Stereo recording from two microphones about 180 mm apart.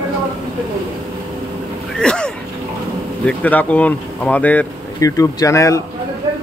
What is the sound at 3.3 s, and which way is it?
Speech, 10° left (ahead or behind).